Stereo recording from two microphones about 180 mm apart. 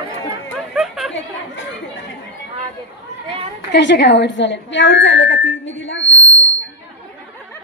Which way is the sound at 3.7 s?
70° left (ahead or behind).